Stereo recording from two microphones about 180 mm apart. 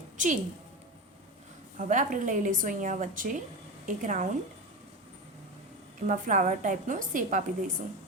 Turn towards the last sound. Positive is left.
turn(degrees=-45)  # may be behind; listen again after turning